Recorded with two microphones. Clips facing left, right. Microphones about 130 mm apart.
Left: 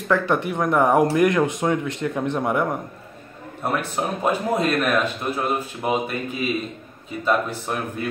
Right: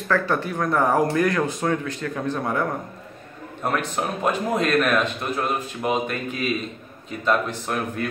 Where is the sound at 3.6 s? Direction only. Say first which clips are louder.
Even; 5° left (ahead or behind).